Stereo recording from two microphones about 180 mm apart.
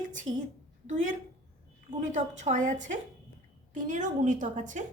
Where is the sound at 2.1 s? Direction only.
40° right (ahead or behind).